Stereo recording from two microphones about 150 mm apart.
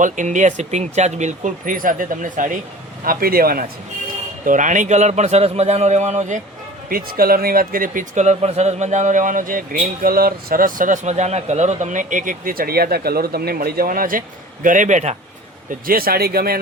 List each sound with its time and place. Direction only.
0.0 s speech: 55° right (ahead or behind)
3.0 s speech: 75° right (ahead or behind)
4.4 s a man's voice: 60° right (ahead or behind)
6.9 s speech: 80° right; by 15.1 s 55° right (ahead or behind)
15.9 s speech: 80° right